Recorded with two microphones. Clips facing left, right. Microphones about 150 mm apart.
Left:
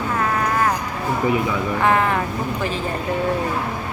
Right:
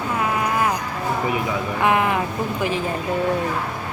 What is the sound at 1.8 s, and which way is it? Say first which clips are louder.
Speech: even; 15° right (ahead or behind).